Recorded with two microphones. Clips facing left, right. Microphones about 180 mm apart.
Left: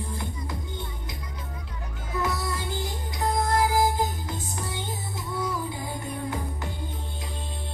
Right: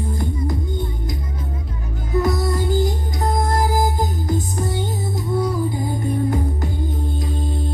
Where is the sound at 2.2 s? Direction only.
40° right (ahead or behind).